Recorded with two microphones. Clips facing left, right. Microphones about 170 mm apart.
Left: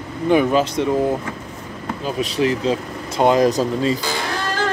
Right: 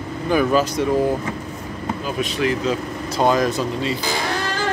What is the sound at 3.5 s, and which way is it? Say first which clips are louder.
Speech: left 4 dB; 40° left (ahead or behind).